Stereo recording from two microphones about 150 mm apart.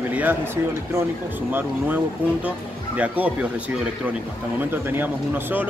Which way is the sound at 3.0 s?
10° right (ahead or behind).